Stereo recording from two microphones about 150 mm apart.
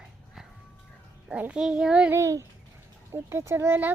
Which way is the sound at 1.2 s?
10° right (ahead or behind).